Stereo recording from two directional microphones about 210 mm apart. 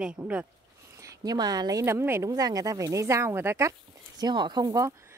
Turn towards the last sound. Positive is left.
turn(degrees=-15)  # may be behind; listen again after turning